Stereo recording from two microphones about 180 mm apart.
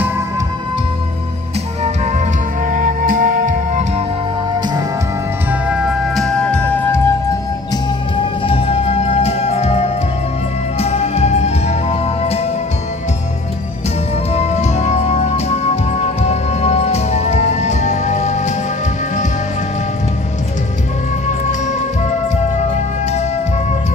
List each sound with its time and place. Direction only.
1.8 s music: 45° right (ahead or behind)
5.5 s music: 5° right (ahead or behind)
7.7 s music: 30° left (ahead or behind)
14.3 s music: 35° left (ahead or behind)